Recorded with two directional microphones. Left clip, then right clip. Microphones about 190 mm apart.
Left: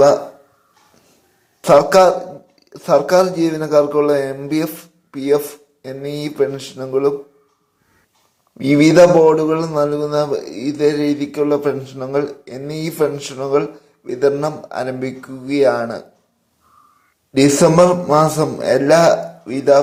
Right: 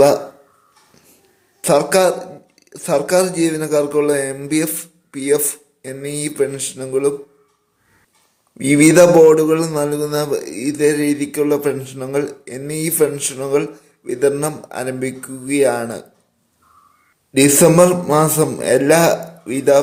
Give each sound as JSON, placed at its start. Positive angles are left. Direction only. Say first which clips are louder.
{"t": 1.6, "sound": "speech", "louder": "left 4 dB", "side_deg": 0}
{"t": 8.5, "sound": "a man's voice", "louder": "even", "side_deg": -5}
{"t": 17.3, "sound": "a man's voice", "louder": "even", "side_deg": -10}